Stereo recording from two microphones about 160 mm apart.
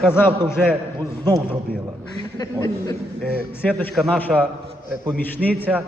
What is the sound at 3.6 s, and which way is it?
A man's voice, 10° left (ahead or behind).